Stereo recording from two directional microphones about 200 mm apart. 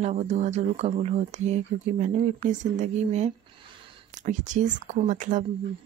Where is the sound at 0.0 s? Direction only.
35° right (ahead or behind).